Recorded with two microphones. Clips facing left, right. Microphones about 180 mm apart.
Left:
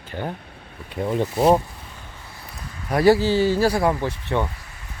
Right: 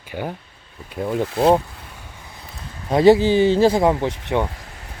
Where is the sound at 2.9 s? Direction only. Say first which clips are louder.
Right 4 dB; 20° right (ahead or behind).